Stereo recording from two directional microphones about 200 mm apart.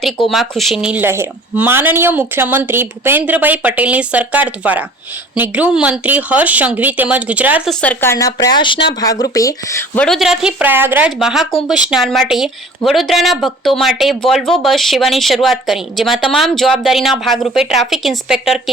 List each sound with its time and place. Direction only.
0.3 s speech: centre (ahead or behind)